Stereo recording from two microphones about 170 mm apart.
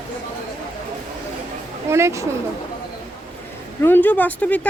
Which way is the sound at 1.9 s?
15° right (ahead or behind).